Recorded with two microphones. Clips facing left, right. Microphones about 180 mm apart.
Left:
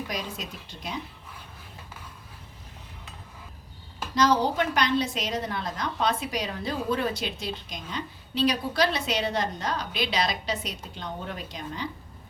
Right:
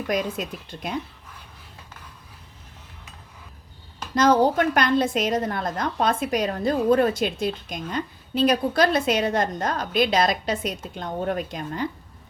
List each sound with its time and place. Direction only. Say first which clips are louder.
0.1 s speech: right 9 dB; 55° right (ahead or behind)
4.1 s a woman's voice: right 5 dB; 50° right (ahead or behind)